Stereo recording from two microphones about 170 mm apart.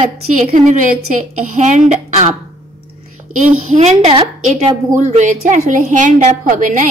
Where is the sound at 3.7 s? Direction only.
45° right (ahead or behind).